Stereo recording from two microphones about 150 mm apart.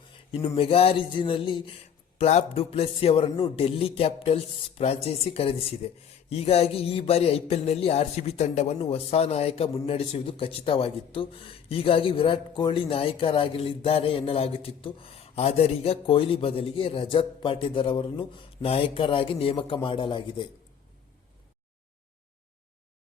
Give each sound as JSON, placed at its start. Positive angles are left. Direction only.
{"t": 0.3, "sound": "speech", "side_deg": 35}
{"t": 2.1, "sound": "speech", "side_deg": 45}